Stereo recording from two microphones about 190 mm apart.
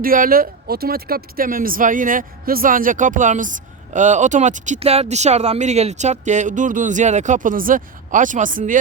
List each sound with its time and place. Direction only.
0.0 s speech: 50° right (ahead or behind)